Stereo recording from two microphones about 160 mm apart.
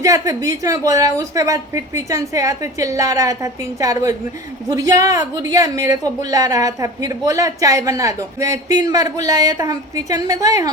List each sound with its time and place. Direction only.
0.0 s a woman's voice: 20° right (ahead or behind)